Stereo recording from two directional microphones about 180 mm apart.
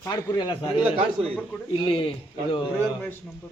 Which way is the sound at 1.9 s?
30° left (ahead or behind).